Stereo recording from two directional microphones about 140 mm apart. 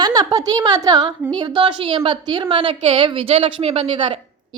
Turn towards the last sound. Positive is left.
turn(degrees=-35)  # may be behind; listen again after turning